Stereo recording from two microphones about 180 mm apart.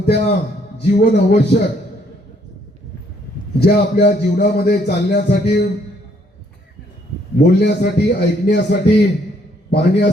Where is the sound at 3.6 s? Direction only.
65° left (ahead or behind).